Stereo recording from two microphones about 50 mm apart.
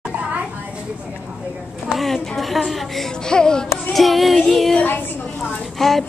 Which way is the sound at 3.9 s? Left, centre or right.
Centre.